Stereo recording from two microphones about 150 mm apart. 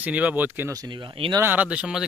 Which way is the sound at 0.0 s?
10° right (ahead or behind).